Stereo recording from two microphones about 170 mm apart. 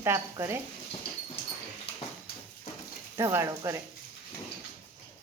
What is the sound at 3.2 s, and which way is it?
Stir, 15° right (ahead or behind).